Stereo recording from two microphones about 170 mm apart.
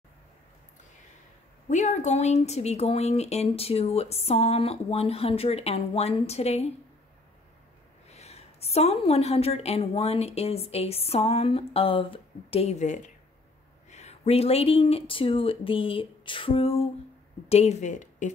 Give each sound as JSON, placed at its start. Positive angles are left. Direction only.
{"t": 1.7, "sound": "speech", "side_deg": 45}
{"t": 8.1, "sound": "speech", "side_deg": 40}